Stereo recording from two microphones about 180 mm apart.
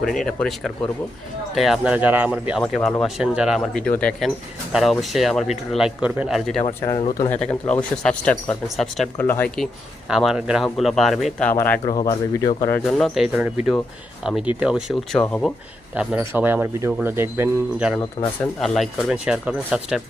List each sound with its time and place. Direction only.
0.0 s speech: centre (ahead or behind)
10.1 s speech: 5° right (ahead or behind)
11.9 s speech: 25° left (ahead or behind)
12.7 s speech: 5° left (ahead or behind)
16.0 s speech: 10° right (ahead or behind)